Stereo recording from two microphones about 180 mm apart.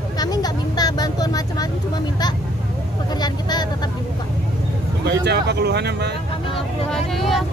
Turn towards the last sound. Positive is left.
turn(degrees=0)  # may be behind; listen again after turning